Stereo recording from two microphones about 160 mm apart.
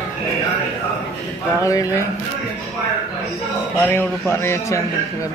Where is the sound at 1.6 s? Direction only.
20° left (ahead or behind).